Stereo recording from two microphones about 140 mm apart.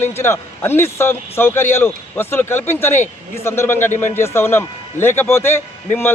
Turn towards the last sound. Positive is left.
turn(degrees=15)  # may be behind; listen again after turning